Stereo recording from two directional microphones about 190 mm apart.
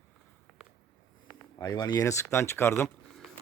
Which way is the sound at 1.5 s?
20° left (ahead or behind).